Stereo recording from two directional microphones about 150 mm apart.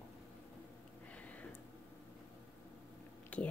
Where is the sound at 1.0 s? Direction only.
10° left (ahead or behind).